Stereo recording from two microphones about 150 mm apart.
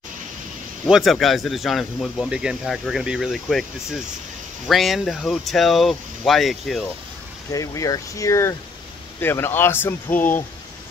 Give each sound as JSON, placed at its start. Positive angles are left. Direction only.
{"t": 0.8, "sound": "speech", "side_deg": 0}
{"t": 7.5, "sound": "speech", "side_deg": 20}